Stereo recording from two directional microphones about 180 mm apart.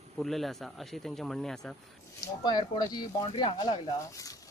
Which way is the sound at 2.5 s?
25° left (ahead or behind).